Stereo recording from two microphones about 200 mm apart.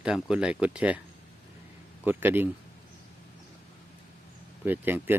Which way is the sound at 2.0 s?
10° right (ahead or behind).